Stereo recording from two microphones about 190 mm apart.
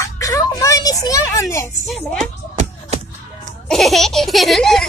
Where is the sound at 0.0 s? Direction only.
15° left (ahead or behind).